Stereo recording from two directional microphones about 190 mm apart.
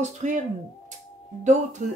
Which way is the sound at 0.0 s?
40° right (ahead or behind).